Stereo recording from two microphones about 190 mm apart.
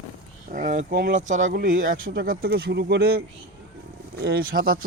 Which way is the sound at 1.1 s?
40° right (ahead or behind).